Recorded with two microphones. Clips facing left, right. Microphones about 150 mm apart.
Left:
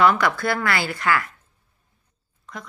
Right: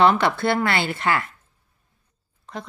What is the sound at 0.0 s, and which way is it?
A woman's voice, 25° right (ahead or behind).